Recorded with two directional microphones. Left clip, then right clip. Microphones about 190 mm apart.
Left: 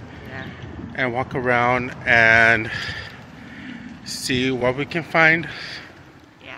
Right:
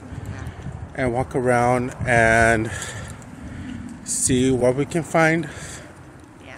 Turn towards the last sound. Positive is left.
turn(degrees=-25)  # may be behind; listen again after turning